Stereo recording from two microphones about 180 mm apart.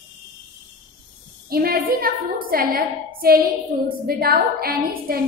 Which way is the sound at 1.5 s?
55° right (ahead or behind).